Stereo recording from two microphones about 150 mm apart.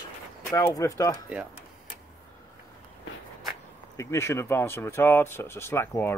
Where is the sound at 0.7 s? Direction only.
20° left (ahead or behind).